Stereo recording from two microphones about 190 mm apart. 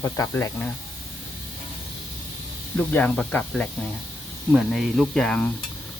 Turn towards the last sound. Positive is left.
turn(degrees=5)  # may be behind; listen again after turning